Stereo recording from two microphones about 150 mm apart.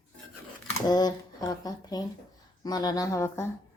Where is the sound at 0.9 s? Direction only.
25° left (ahead or behind).